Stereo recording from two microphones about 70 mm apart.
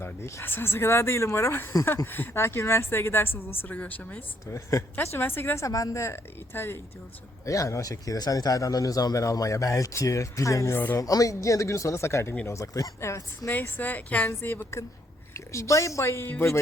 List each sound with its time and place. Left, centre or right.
0.0 s a woman's voice: left
4.4 s a man's voice: left
5.1 s a woman's voice: left
5.6 s a man's voice: left
7.4 s a man's voice: left
13.5 s speech: left
15.3 s a woman's voice: left